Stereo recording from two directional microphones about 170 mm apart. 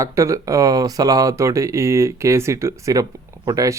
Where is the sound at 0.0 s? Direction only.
15° right (ahead or behind).